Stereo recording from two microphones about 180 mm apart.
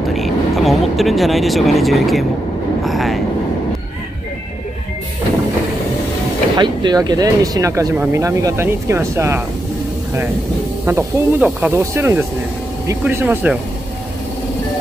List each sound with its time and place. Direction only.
0.1 s speech: centre (ahead or behind)
6.5 s speech: 25° right (ahead or behind)
10.9 s speech: 15° right (ahead or behind)